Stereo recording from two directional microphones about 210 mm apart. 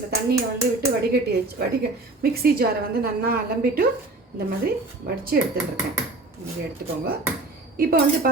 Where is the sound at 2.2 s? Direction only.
45° right (ahead or behind).